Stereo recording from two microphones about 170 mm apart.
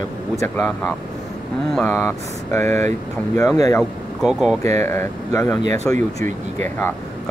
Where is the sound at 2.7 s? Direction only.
40° right (ahead or behind).